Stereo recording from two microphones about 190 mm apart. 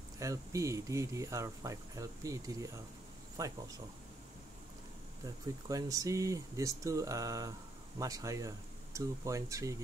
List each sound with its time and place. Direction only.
0.2 s speech: 15° right (ahead or behind)
5.7 s speech: 20° right (ahead or behind)